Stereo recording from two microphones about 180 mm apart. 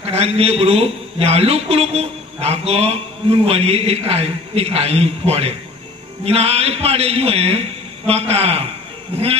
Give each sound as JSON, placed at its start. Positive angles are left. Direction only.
{"t": 0.0, "sound": "a man's voice", "side_deg": -35}